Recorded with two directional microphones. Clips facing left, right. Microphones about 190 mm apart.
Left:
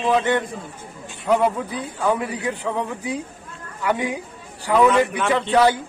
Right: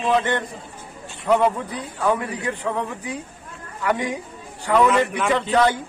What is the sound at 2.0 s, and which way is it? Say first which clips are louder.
A man's voice: even; 10° left (ahead or behind).